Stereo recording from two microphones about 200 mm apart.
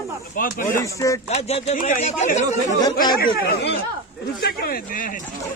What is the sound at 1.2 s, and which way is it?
Speech, 30° left (ahead or behind).